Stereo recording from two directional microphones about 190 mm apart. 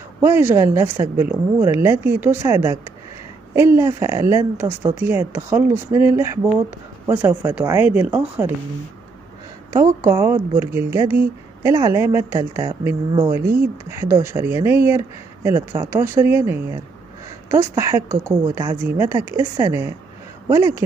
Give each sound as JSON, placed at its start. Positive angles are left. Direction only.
{"t": 0.2, "sound": "a woman's voice", "side_deg": -10}
{"t": 9.7, "sound": "a woman's voice", "side_deg": -15}